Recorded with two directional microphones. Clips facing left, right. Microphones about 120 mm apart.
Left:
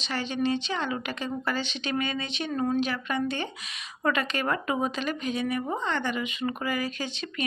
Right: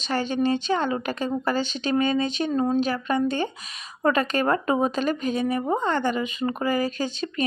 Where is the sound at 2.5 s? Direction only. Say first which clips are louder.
Right 2 dB; 25° right (ahead or behind).